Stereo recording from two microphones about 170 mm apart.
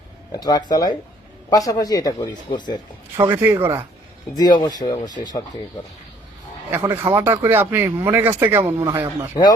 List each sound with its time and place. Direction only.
0.3 s speech: 20° left (ahead or behind)
3.2 s speech: 15° right (ahead or behind)
4.4 s speech: 25° left (ahead or behind)
6.7 s speech: 15° right (ahead or behind)